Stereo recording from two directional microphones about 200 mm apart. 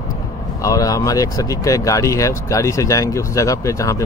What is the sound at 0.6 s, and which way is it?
Speech, 15° left (ahead or behind).